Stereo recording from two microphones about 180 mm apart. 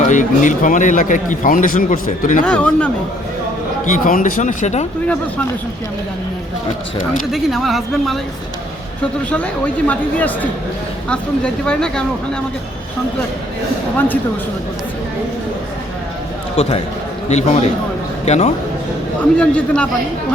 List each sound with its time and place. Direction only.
0.1 s a man's voice: 45° left (ahead or behind)
2.4 s speech: 5° left (ahead or behind)
3.8 s a man's voice: 45° left (ahead or behind)
7.1 s speech: centre (ahead or behind)
9.3 s speech: 5° left (ahead or behind)
16.6 s a man's voice: 35° left (ahead or behind)
19.4 s speech: 5° left (ahead or behind)